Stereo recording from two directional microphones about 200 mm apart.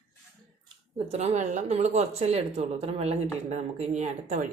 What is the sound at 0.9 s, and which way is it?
A woman's voice, 35° right (ahead or behind).